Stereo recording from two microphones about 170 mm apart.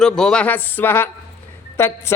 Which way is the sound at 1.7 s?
15° left (ahead or behind).